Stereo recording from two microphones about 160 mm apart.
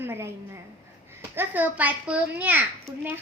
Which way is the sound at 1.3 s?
10° right (ahead or behind).